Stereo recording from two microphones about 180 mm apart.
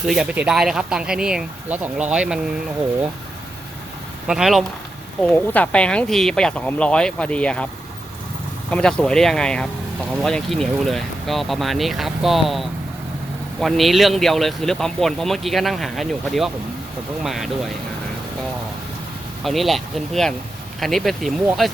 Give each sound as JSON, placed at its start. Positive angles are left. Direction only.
{"t": 0.1, "sound": "speech", "side_deg": -5}
{"t": 4.3, "sound": "speech", "side_deg": 0}
{"t": 5.2, "sound": "speech", "side_deg": 10}
{"t": 8.7, "sound": "speech", "side_deg": 5}
{"t": 19.5, "sound": "speech", "side_deg": 0}